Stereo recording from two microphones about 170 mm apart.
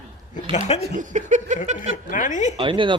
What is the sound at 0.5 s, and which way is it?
Speech, 45° left (ahead or behind).